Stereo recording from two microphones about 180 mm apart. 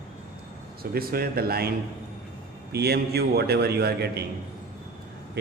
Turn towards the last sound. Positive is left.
turn(degrees=-65)  # may be behind; listen again after turning